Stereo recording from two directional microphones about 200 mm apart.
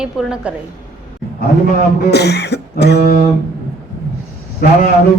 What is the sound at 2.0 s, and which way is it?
Cough, 55° left (ahead or behind).